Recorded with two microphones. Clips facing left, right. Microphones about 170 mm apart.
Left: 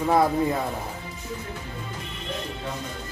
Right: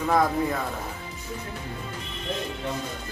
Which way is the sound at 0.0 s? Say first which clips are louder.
Left 2 dB; 20° left (ahead or behind).